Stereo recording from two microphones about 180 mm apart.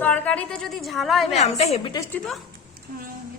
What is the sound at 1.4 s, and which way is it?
Speech, 35° left (ahead or behind).